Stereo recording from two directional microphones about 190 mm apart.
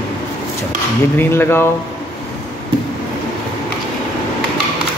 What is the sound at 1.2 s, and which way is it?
Speech, 10° left (ahead or behind).